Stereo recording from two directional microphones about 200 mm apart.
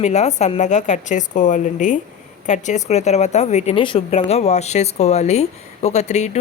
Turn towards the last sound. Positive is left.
turn(degrees=35)  # may be behind; listen again after turning